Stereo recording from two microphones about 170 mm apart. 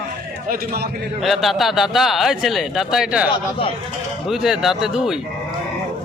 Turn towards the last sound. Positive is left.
turn(degrees=-5)  # may be behind; listen again after turning